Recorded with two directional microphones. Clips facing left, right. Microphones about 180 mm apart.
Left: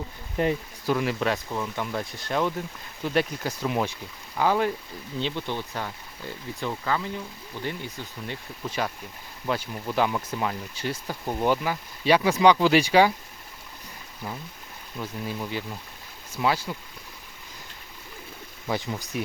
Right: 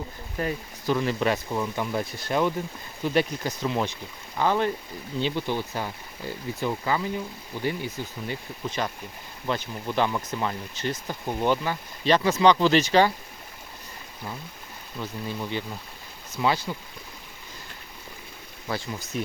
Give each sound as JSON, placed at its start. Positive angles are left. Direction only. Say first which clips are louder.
{"t": 0.4, "sound": "speech", "louder": "left 4 dB", "side_deg": 25}
{"t": 0.9, "sound": "speech", "louder": "right 1 dB", "side_deg": 5}
{"t": 5.2, "sound": "speech", "louder": "right 3 dB", "side_deg": -5}
{"t": 8.8, "sound": "speech", "louder": "left 2 dB", "side_deg": 5}
{"t": 14.9, "sound": "speech", "louder": "even", "side_deg": 5}
{"t": 18.7, "sound": "speech", "louder": "left 2 dB", "side_deg": 15}